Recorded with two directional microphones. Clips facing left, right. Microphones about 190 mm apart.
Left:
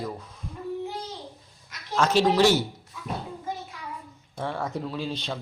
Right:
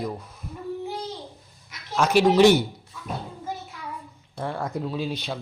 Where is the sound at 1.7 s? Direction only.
10° right (ahead or behind).